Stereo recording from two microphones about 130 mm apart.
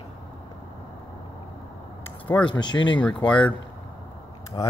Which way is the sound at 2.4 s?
35° left (ahead or behind).